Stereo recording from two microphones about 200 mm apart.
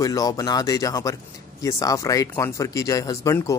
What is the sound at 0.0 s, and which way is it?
Speech, 15° left (ahead or behind).